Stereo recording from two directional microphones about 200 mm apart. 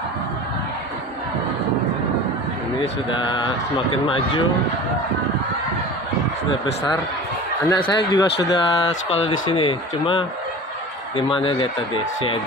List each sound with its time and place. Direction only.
2.8 s speech: 25° left (ahead or behind)
7.7 s speech: 25° left (ahead or behind)